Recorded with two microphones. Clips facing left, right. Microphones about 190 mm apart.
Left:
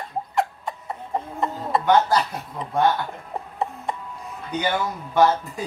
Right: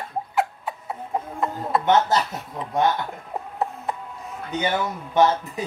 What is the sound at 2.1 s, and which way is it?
Speech, 25° right (ahead or behind).